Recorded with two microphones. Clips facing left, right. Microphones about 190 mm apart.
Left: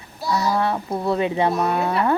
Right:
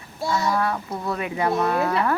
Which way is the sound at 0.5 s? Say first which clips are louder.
Left 3 dB; 25° left (ahead or behind).